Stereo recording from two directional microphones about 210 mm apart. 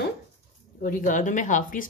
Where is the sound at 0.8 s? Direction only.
40° left (ahead or behind).